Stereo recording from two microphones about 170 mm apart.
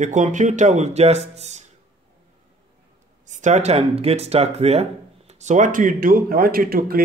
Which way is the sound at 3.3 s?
45° right (ahead or behind).